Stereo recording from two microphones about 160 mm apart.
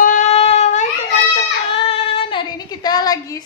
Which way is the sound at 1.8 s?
35° left (ahead or behind).